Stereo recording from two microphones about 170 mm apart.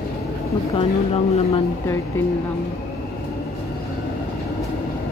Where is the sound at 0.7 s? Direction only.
35° left (ahead or behind).